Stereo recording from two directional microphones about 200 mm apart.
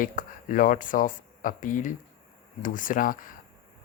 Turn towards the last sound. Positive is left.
turn(degrees=45)  # may be behind; listen again after turning